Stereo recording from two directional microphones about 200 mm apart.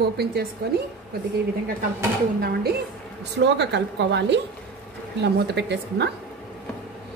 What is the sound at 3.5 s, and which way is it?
A woman's voice, 60° right (ahead or behind).